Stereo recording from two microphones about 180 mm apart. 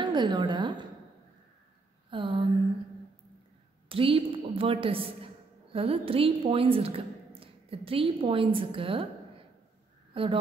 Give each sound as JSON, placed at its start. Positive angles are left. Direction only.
{"t": 0.0, "sound": "a woman's voice", "side_deg": -25}
{"t": 2.0, "sound": "a sound", "side_deg": -30}
{"t": 3.9, "sound": "a woman's voice", "side_deg": -30}
{"t": 10.1, "sound": "a woman's voice", "side_deg": -30}